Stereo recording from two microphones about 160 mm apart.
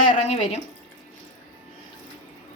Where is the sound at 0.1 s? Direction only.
45° left (ahead or behind).